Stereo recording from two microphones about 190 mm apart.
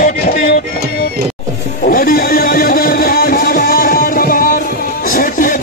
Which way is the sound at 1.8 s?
50° left (ahead or behind).